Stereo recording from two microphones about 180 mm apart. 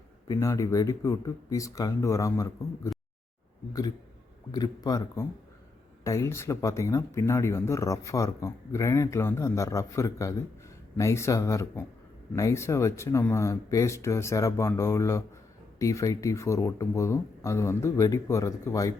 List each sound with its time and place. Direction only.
0.3 s speech: 15° left (ahead or behind)